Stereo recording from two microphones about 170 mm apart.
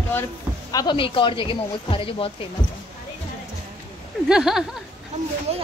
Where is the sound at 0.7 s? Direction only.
30° left (ahead or behind).